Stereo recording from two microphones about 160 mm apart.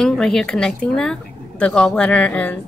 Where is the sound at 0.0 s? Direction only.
5° left (ahead or behind).